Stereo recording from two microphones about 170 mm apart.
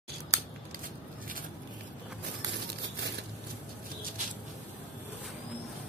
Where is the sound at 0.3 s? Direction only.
20° right (ahead or behind).